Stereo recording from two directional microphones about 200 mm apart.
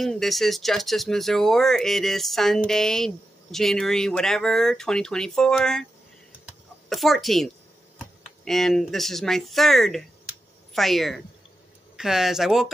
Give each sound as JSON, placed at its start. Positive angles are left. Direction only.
{"t": 0.0, "sound": "speech", "side_deg": 0}
{"t": 6.9, "sound": "speech", "side_deg": 0}